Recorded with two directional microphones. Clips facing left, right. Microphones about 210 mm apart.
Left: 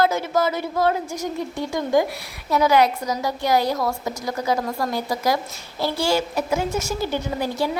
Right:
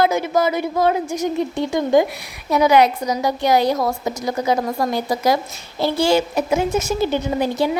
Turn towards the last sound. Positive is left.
turn(degrees=-20)  # may be behind; listen again after turning